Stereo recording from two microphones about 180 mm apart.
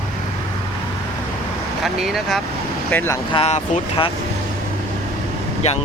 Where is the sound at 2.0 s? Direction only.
Centre (ahead or behind).